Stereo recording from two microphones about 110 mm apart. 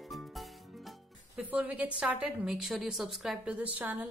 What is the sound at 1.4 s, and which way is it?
A woman's voice, 15° right (ahead or behind).